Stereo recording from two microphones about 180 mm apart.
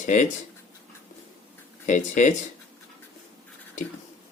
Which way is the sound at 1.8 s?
40° left (ahead or behind).